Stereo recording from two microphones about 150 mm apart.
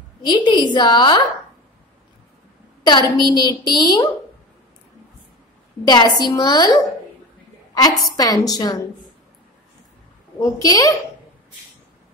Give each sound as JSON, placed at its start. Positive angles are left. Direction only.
{"t": 0.2, "sound": "a woman's voice", "side_deg": 30}
{"t": 2.8, "sound": "a woman's voice", "side_deg": 30}
{"t": 5.9, "sound": "a woman's voice", "side_deg": 30}
{"t": 10.4, "sound": "a woman's voice", "side_deg": 25}